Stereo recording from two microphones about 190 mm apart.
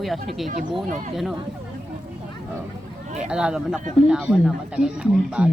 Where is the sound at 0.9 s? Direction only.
40° right (ahead or behind).